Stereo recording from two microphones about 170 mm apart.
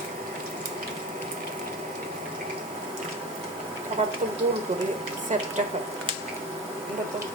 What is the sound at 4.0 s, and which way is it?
Speech, 40° right (ahead or behind).